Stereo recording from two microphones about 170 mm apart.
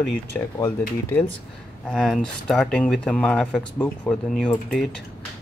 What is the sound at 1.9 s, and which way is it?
Speech, centre (ahead or behind).